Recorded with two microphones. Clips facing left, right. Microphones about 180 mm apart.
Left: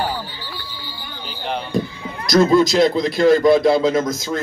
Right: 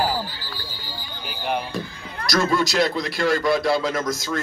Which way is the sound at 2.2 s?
25° left (ahead or behind).